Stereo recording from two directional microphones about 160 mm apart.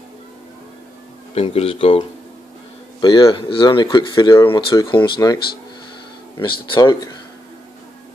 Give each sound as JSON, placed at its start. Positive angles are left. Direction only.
{"t": 1.3, "sound": "speech", "side_deg": 40}